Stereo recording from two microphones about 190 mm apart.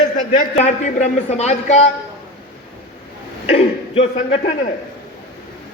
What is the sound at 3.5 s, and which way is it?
A man's voice, 30° left (ahead or behind).